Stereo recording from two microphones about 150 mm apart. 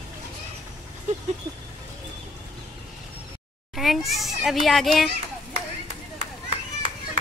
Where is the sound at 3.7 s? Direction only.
Centre (ahead or behind).